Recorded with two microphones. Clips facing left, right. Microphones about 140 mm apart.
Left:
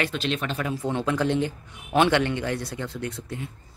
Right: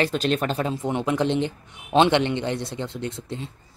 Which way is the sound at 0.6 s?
20° right (ahead or behind).